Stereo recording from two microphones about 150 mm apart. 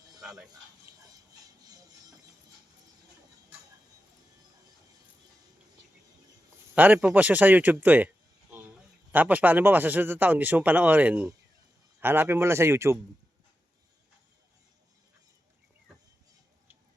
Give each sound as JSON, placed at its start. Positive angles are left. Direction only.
{"t": 0.2, "sound": "a sound", "side_deg": 0}
{"t": 1.0, "sound": "music", "side_deg": -25}
{"t": 6.7, "sound": "speech", "side_deg": -10}